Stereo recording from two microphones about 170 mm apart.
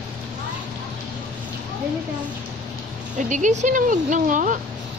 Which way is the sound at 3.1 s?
45° right (ahead or behind).